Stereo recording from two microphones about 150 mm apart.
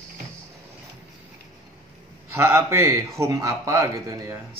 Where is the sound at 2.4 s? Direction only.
15° right (ahead or behind).